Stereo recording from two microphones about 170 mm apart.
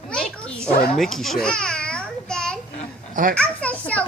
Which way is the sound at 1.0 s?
Centre (ahead or behind).